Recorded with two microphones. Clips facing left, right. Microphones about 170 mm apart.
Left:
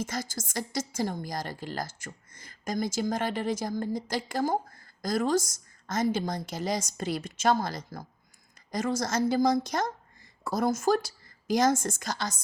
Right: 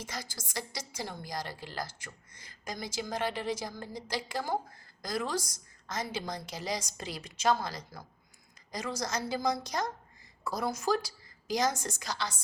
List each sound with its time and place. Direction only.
0.0 s a woman's voice: 45° left (ahead or behind)